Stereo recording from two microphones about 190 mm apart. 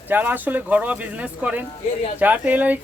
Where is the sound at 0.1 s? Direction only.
10° right (ahead or behind).